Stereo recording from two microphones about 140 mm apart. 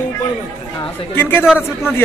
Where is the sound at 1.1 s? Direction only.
15° left (ahead or behind).